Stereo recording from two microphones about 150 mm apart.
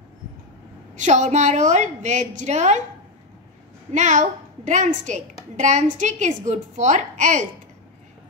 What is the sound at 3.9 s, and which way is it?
A woman's voice, 55° right (ahead or behind).